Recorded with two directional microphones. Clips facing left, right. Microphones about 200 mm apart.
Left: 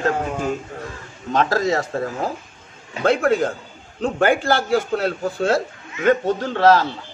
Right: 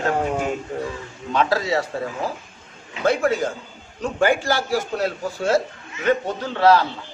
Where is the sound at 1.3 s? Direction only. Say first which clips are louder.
Left 2 dB; 45° left (ahead or behind).